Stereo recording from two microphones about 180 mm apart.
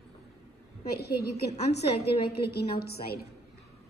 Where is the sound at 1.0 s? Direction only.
60° left (ahead or behind).